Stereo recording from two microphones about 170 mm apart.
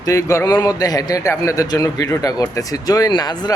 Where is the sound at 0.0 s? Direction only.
20° left (ahead or behind).